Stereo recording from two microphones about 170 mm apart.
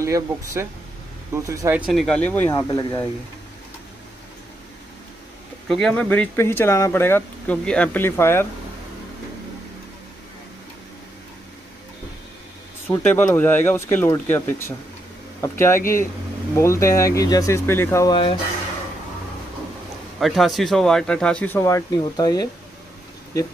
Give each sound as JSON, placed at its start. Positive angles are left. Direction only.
{"t": 0.0, "sound": "speech", "side_deg": -15}
{"t": 1.9, "sound": "speech", "side_deg": 0}
{"t": 2.7, "sound": "speech", "side_deg": 20}
{"t": 5.7, "sound": "speech", "side_deg": 0}
{"t": 12.8, "sound": "speech", "side_deg": 10}
{"t": 20.2, "sound": "speech", "side_deg": 0}